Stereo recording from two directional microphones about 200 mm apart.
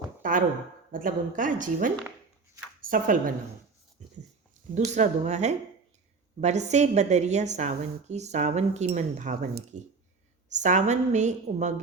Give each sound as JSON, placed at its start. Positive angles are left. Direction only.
{"t": 0.2, "sound": "a sound", "side_deg": -40}
{"t": 0.9, "sound": "a woman's voice", "side_deg": -40}
{"t": 4.7, "sound": "a woman's voice", "side_deg": -35}